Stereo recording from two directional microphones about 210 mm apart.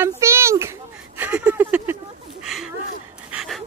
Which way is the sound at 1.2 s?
5° right (ahead or behind).